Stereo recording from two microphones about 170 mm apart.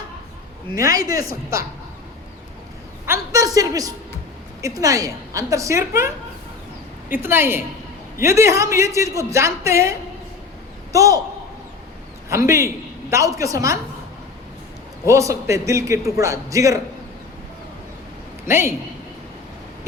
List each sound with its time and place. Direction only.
0.8 s a woman's voice: 20° right (ahead or behind)
3.1 s a woman's voice: 20° right (ahead or behind)
7.1 s a woman's voice: 15° right (ahead or behind)
12.3 s a woman's voice: 15° right (ahead or behind)
15.0 s a woman's voice: 15° right (ahead or behind)
18.4 s a woman's voice: 15° right (ahead or behind)